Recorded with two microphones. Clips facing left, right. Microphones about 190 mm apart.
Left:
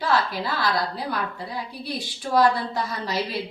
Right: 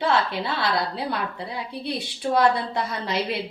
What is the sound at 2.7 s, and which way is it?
Speech, 20° right (ahead or behind).